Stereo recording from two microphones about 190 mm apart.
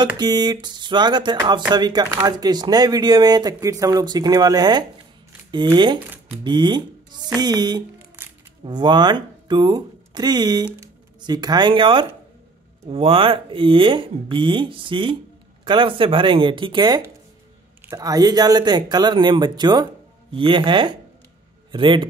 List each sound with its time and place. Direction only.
0.0 s speech: 20° right (ahead or behind)
8.2 s music: 10° right (ahead or behind)
8.6 s speech: 25° right (ahead or behind)